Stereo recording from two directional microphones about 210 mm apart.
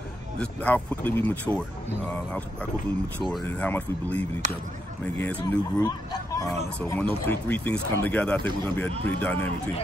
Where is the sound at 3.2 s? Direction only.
5° left (ahead or behind).